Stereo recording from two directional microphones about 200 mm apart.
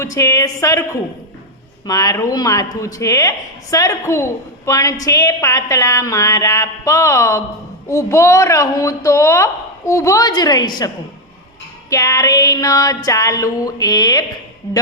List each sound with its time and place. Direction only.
0.0 s a woman's voice: 15° left (ahead or behind)